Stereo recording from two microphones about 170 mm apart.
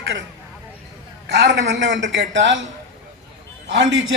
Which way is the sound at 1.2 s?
90° right.